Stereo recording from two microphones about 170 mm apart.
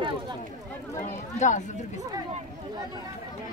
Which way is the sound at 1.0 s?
45° left (ahead or behind).